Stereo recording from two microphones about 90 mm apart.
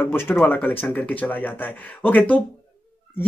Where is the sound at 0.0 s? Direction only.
25° left (ahead or behind).